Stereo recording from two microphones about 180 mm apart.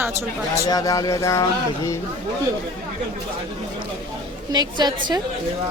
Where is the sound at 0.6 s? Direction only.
20° left (ahead or behind).